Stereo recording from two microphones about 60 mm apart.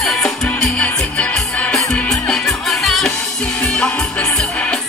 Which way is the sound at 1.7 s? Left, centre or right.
Centre.